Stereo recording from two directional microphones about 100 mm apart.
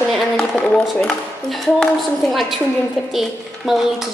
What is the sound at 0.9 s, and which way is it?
A woman's voice, 5° left (ahead or behind).